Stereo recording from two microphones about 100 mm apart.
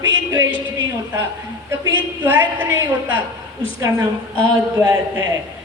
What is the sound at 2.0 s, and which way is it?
Speech, 20° right (ahead or behind).